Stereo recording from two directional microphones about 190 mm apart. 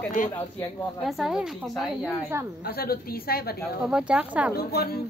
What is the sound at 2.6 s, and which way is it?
A woman's voice, 55° left (ahead or behind).